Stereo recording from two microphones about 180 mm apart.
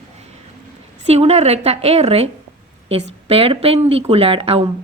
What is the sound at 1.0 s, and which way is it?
Speech, 35° right (ahead or behind).